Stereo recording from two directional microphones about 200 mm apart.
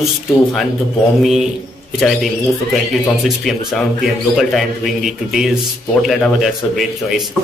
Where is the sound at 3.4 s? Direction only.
Centre (ahead or behind).